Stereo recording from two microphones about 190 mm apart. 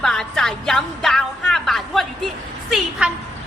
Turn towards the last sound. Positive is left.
turn(degrees=0)  # may be behind; listen again after turning